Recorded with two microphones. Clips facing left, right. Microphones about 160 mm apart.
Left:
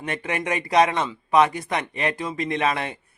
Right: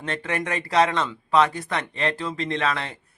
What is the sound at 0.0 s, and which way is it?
Speech, 15° left (ahead or behind).